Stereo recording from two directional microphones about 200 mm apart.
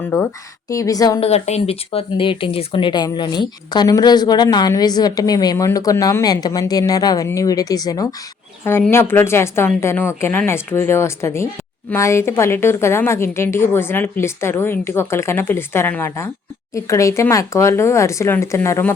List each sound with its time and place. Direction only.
0.1 s a woman's voice: 15° left (ahead or behind)
1.2 s a woman's voice: 30° left (ahead or behind); by 18.9 s 10° left (ahead or behind)